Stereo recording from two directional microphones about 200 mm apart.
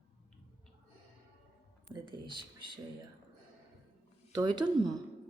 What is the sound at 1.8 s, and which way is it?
Speech, 20° right (ahead or behind).